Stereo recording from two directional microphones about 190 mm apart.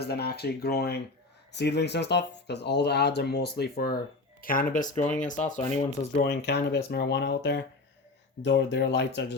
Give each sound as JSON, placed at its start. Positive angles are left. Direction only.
{"t": 0.0, "sound": "speech", "side_deg": 55}
{"t": 6.1, "sound": "speech", "side_deg": 60}